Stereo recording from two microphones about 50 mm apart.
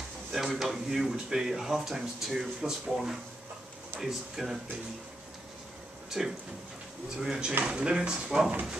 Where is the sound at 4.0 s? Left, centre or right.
Centre.